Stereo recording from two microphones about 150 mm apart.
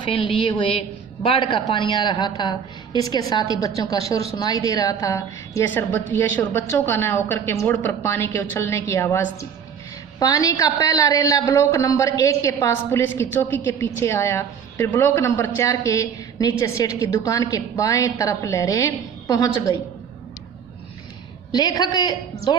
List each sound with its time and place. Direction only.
0.0 s a woman's voice: 35° left (ahead or behind)
21.5 s a woman's voice: 25° left (ahead or behind)